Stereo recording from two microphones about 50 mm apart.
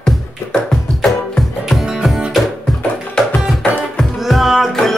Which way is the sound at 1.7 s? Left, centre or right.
Centre.